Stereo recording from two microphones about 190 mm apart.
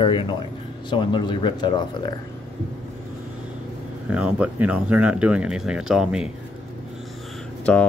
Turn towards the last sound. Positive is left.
turn(degrees=5)  # may be behind; listen again after turning